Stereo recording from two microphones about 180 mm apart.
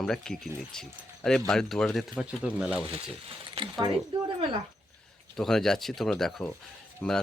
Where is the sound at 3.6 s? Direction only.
25° right (ahead or behind).